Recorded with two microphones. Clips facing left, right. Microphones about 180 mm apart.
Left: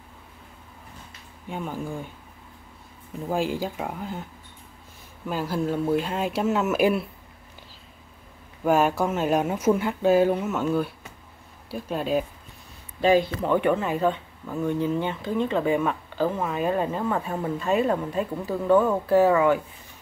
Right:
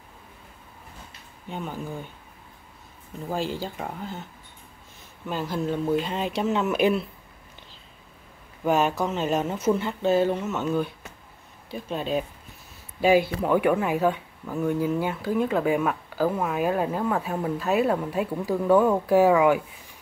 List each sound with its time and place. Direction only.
1.5 s speech: 10° left (ahead or behind)
3.3 s speech: 10° left (ahead or behind)
5.3 s speech: 10° left (ahead or behind)
8.6 s speech: 10° left (ahead or behind)
13.0 s speech: 10° right (ahead or behind)